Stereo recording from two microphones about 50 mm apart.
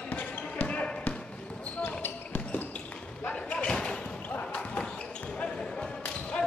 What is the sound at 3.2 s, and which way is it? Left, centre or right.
Slam, left.